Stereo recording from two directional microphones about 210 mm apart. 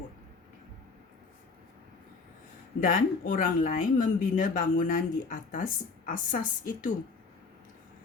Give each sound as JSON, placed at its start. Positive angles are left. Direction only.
{"t": 2.8, "sound": "speech", "side_deg": 40}